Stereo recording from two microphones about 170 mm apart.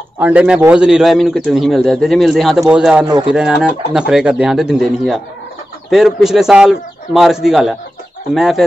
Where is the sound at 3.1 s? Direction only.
25° right (ahead or behind).